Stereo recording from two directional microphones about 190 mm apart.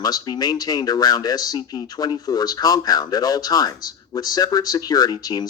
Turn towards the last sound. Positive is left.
turn(degrees=20)  # may be behind; listen again after turning